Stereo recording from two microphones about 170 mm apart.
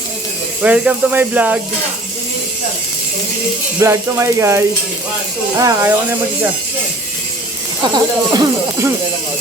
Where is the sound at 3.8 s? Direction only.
15° right (ahead or behind).